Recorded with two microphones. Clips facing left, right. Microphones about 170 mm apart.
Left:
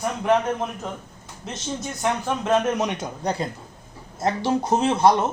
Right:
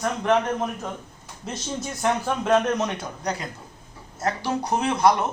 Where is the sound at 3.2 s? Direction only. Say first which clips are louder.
Left 4 dB; 30° left (ahead or behind).